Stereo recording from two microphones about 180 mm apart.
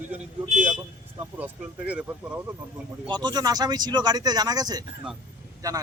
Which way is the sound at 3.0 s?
25° right (ahead or behind).